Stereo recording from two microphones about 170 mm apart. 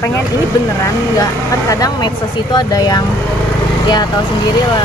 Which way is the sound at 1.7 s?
20° left (ahead or behind).